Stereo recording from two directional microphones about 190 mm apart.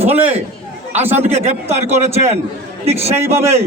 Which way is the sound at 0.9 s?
10° right (ahead or behind).